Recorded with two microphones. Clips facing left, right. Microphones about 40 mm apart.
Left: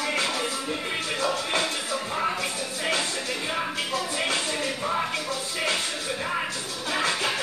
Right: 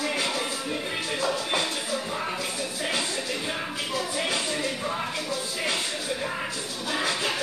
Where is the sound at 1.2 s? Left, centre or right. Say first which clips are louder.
Left 1 dB; left.